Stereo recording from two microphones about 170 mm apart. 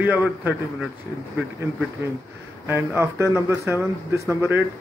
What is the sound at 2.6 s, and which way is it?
Speech, 15° right (ahead or behind).